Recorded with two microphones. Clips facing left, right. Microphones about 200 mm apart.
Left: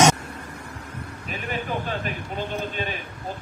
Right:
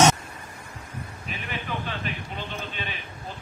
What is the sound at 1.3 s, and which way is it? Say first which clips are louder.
A man's voice: left 5 dB; 40° left (ahead or behind).